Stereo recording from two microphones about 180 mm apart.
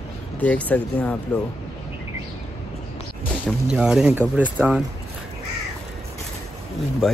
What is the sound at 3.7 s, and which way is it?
Speech, 5° right (ahead or behind).